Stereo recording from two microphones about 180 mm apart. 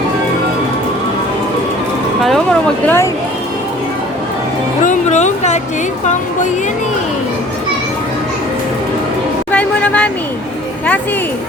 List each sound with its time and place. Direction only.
2.2 s speech: 5° left (ahead or behind)
4.8 s speech: 40° left (ahead or behind)
9.5 s speech: 5° left (ahead or behind)